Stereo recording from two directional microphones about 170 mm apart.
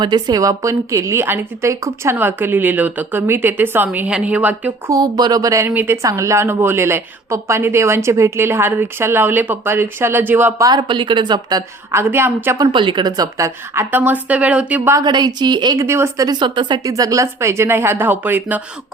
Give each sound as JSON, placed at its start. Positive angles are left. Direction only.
{"t": 0.0, "sound": "a woman's voice", "side_deg": -25}
{"t": 4.9, "sound": "a woman's voice", "side_deg": -25}
{"t": 10.7, "sound": "a woman's voice", "side_deg": -30}
{"t": 14.9, "sound": "a woman's voice", "side_deg": -25}